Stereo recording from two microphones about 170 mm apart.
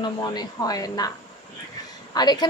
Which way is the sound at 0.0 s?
25° left (ahead or behind).